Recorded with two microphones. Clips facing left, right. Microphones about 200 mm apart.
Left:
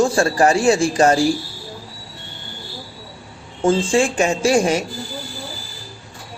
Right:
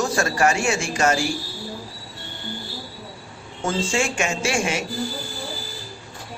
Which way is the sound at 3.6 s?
35° left (ahead or behind).